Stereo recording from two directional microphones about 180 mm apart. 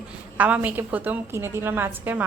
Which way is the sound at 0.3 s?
10° right (ahead or behind).